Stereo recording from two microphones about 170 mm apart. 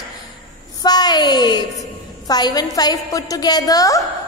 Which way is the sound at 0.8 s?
25° left (ahead or behind).